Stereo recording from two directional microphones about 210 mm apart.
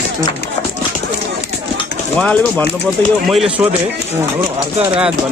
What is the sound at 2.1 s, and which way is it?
Speech, 5° left (ahead or behind).